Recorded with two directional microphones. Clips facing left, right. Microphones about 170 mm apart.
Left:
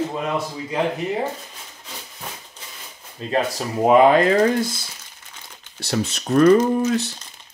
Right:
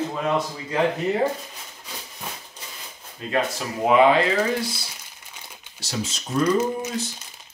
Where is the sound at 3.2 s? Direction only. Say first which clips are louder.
Left 3 dB; 30° left (ahead or behind).